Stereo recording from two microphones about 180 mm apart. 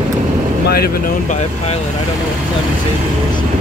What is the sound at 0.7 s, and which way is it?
Speech, 60° left (ahead or behind).